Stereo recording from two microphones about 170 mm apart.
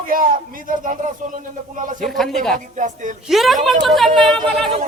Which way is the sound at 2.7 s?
50° right (ahead or behind).